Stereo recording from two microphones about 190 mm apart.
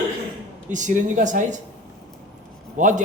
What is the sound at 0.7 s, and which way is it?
Speech, 40° right (ahead or behind).